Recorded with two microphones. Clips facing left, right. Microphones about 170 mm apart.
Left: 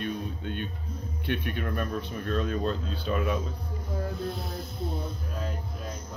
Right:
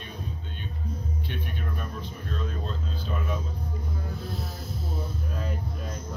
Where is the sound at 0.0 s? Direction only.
60° left (ahead or behind).